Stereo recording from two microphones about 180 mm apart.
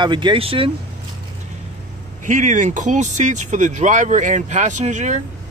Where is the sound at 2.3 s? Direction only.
45° right (ahead or behind).